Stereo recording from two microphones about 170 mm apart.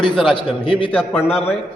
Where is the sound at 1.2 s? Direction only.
35° left (ahead or behind).